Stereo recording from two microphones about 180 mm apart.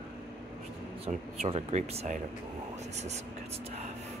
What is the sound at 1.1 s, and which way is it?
Speech, 35° right (ahead or behind).